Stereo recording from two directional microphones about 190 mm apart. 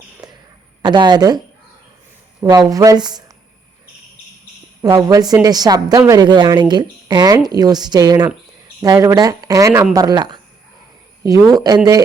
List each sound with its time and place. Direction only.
0.2 s a sound: 20° right (ahead or behind)
0.9 s a woman's voice: 20° right (ahead or behind)
2.4 s a woman's voice: 20° right (ahead or behind)
4.8 s a woman's voice: 20° right (ahead or behind)